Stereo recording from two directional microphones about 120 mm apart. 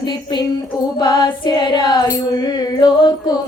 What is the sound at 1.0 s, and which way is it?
Music, 40° left (ahead or behind).